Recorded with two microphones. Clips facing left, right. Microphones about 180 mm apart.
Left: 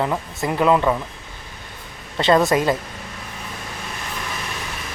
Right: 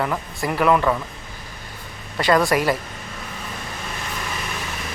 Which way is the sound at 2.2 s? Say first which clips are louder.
Left 2 dB; 25° left (ahead or behind).